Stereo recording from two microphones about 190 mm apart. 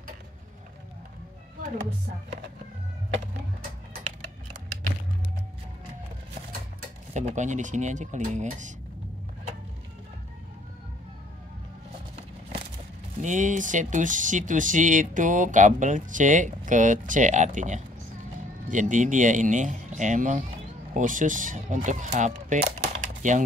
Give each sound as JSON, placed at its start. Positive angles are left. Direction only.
{"t": 7.2, "sound": "speech", "side_deg": -40}
{"t": 13.2, "sound": "speech", "side_deg": -40}
{"t": 22.8, "sound": "a sound", "side_deg": -40}